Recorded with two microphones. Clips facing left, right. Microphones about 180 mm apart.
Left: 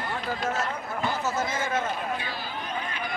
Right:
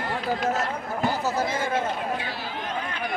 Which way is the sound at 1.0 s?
35° right (ahead or behind).